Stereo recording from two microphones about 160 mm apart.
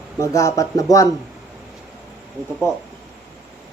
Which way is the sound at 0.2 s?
20° left (ahead or behind).